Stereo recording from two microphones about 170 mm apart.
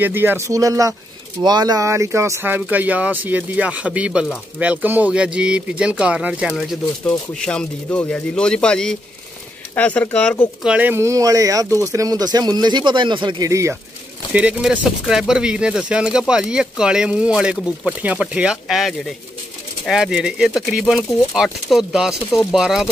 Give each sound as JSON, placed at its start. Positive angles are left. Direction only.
{"t": 0.0, "sound": "speech", "side_deg": -10}
{"t": 10.6, "sound": "speech", "side_deg": -10}
{"t": 14.3, "sound": "speech", "side_deg": -5}